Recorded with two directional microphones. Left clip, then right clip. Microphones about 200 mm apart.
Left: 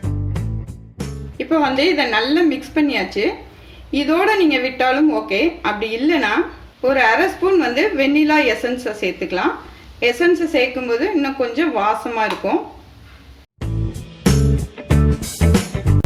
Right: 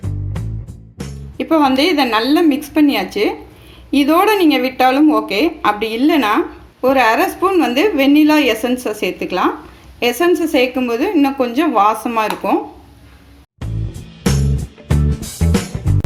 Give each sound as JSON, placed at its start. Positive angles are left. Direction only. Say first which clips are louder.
{"t": 0.4, "sound": "music", "louder": "left 1 dB", "side_deg": 0}
{"t": 1.4, "sound": "a woman's voice", "louder": "right 3 dB", "side_deg": -45}
{"t": 13.6, "sound": "music", "louder": "left 3 dB", "side_deg": 0}